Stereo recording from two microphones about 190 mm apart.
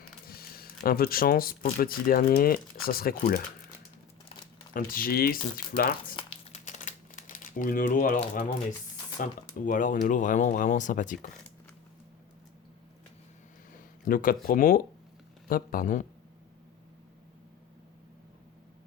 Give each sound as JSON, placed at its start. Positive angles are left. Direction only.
{"t": 0.3, "sound": "speech", "side_deg": 50}
{"t": 4.7, "sound": "speech", "side_deg": 50}
{"t": 6.1, "sound": "crumpling", "side_deg": 30}
{"t": 9.2, "sound": "speech", "side_deg": 45}
{"t": 14.0, "sound": "speech", "side_deg": 45}